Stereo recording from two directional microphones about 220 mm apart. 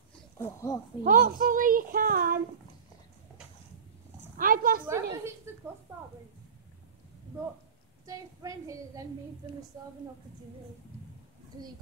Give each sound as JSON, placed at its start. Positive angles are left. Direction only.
{"t": 0.4, "sound": "speech", "side_deg": 15}
{"t": 1.0, "sound": "speech", "side_deg": -40}
{"t": 4.4, "sound": "speech", "side_deg": -40}
{"t": 4.8, "sound": "a woman's voice", "side_deg": -10}
{"t": 8.1, "sound": "a woman's voice", "side_deg": -15}